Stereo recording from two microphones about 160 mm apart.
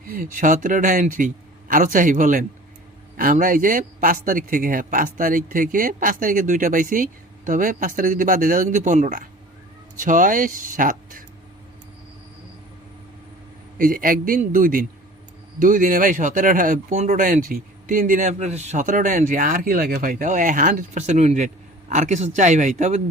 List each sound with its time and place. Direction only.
0.1 s a man's voice: 55° right (ahead or behind)
13.7 s a man's voice: 60° right (ahead or behind)